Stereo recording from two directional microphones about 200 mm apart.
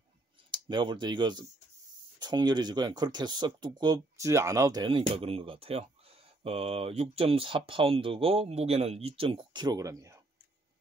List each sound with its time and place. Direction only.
0.5 s speech: 25° right (ahead or behind)